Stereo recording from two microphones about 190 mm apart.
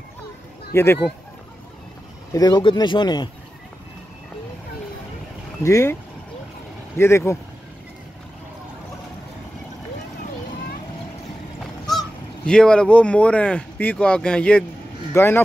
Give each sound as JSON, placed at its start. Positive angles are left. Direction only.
{"t": 0.7, "sound": "speech", "side_deg": 15}
{"t": 2.3, "sound": "speech", "side_deg": 20}
{"t": 5.6, "sound": "speech", "side_deg": 15}
{"t": 7.0, "sound": "speech", "side_deg": 15}
{"t": 12.4, "sound": "speech", "side_deg": 5}